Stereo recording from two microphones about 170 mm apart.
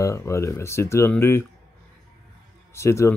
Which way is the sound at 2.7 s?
15° left (ahead or behind).